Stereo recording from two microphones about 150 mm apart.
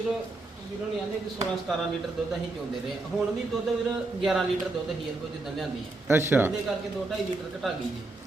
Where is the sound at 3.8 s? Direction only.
Centre (ahead or behind).